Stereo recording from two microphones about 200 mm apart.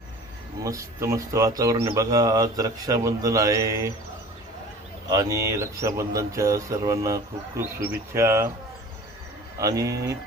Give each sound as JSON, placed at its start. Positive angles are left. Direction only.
{"t": 0.6, "sound": "speech", "side_deg": -15}
{"t": 5.1, "sound": "speech", "side_deg": -15}
{"t": 9.6, "sound": "speech", "side_deg": -15}